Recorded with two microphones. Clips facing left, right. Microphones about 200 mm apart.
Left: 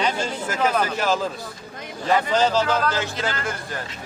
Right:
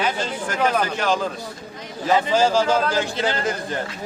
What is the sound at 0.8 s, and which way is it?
Speech, 5° left (ahead or behind).